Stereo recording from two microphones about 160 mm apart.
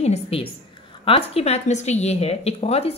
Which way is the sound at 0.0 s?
40° left (ahead or behind).